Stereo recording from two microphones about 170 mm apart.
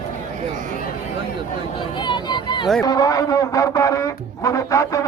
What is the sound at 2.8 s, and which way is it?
A man's voice, 20° left (ahead or behind).